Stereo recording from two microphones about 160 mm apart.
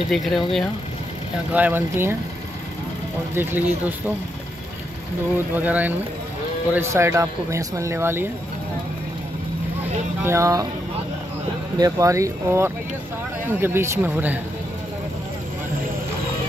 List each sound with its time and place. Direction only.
0.1 s speech: centre (ahead or behind)
1.5 s speech: 10° right (ahead or behind)
3.3 s speech: 10° right (ahead or behind)
5.5 s speech: 10° right (ahead or behind)
10.2 s speech: 20° right (ahead or behind)
11.8 s speech: 20° right (ahead or behind)